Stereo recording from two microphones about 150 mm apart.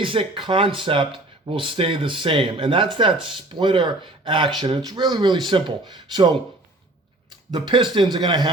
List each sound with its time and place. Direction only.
0.0 s speech: 35° right (ahead or behind)
7.5 s speech: 30° right (ahead or behind)